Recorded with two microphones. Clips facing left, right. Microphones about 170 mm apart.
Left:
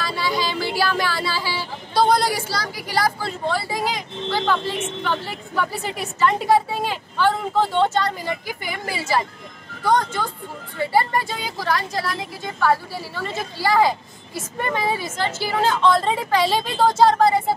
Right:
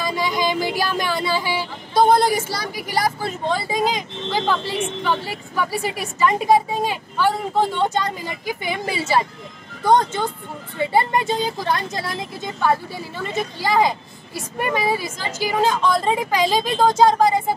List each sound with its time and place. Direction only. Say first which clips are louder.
0.0 s speech: right 2 dB; 15° right (ahead or behind)